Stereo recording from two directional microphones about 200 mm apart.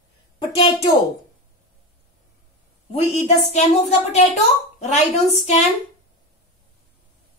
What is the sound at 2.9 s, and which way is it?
Speech, 30° left (ahead or behind).